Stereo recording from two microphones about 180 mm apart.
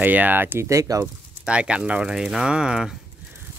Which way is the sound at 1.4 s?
5° right (ahead or behind).